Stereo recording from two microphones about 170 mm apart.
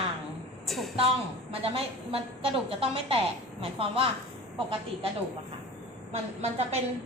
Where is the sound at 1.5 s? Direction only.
35° right (ahead or behind).